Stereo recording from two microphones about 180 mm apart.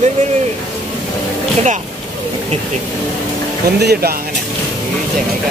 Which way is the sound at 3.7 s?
65° right (ahead or behind).